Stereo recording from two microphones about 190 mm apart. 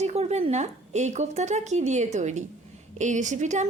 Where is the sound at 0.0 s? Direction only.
35° right (ahead or behind).